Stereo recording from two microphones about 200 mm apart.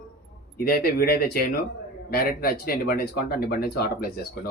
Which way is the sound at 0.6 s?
50° left (ahead or behind).